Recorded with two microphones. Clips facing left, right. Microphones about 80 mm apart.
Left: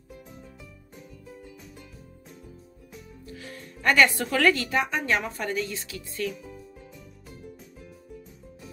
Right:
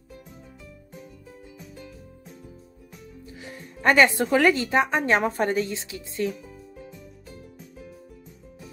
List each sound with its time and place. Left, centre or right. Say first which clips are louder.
3.3 s speech: even; centre
6.3 s music: left 1 dB; centre